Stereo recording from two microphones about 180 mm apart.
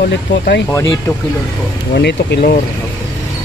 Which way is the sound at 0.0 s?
75° left (ahead or behind).